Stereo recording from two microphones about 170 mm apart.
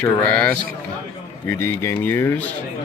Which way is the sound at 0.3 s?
5° left (ahead or behind).